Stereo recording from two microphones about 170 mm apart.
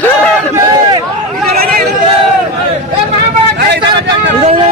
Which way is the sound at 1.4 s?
60° right (ahead or behind).